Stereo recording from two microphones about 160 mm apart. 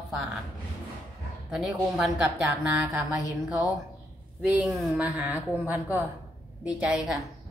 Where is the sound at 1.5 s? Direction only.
Centre (ahead or behind).